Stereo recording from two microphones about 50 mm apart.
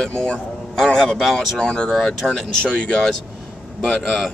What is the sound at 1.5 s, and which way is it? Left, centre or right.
Speech, centre.